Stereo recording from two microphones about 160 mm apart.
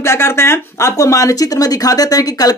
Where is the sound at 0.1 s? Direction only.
15° left (ahead or behind).